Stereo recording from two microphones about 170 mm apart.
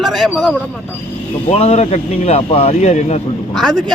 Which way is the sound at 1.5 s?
35° left (ahead or behind).